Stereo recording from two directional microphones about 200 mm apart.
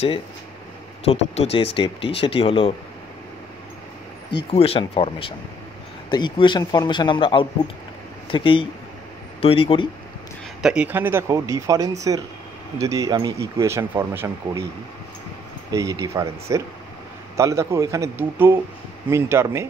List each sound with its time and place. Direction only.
1.0 s speech: 30° left (ahead or behind)
4.5 s speech: 30° left (ahead or behind)
10.6 s speech: 5° right (ahead or behind)
15.7 s speech: 15° right (ahead or behind)